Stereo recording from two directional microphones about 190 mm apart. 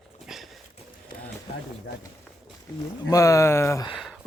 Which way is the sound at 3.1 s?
15° left (ahead or behind).